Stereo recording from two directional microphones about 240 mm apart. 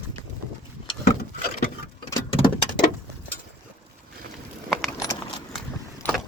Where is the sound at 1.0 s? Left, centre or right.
Left.